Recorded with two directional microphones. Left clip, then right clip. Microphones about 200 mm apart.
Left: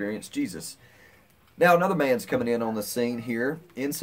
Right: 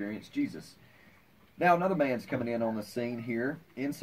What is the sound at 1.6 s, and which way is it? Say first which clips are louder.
Speech: left 6 dB; 20° left (ahead or behind).